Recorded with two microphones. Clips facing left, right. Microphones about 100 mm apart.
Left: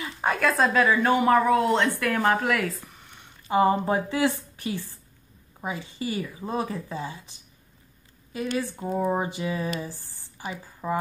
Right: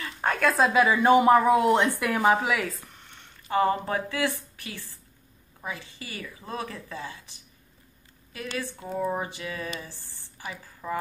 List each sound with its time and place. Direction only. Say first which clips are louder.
0.2 s speech: even; centre (ahead or behind)
3.4 s a woman's voice: left 3 dB; 15° left (ahead or behind)
8.7 s a woman's voice: left 1 dB; 20° left (ahead or behind)